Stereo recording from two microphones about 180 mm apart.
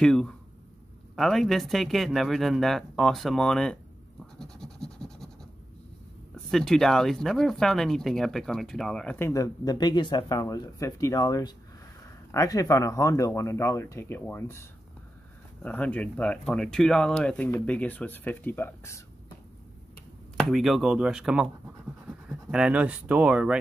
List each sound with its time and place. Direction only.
0.0 s speech: 5° left (ahead or behind)
4.4 s scratch: 5° left (ahead or behind)
6.5 s speech: centre (ahead or behind)
20.3 s speech: centre (ahead or behind)